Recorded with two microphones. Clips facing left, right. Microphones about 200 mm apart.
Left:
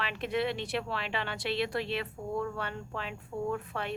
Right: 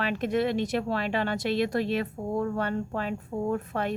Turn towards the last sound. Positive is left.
turn(degrees=-45)  # may be behind; listen again after turning